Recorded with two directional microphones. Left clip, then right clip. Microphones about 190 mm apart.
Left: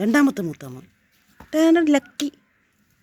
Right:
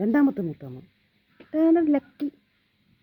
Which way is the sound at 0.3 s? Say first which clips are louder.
Left 3 dB; 20° left (ahead or behind).